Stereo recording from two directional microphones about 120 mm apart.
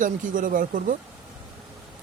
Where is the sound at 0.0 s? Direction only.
90° right.